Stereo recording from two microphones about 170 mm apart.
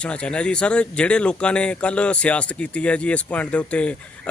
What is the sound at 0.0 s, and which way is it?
Speech, 5° left (ahead or behind).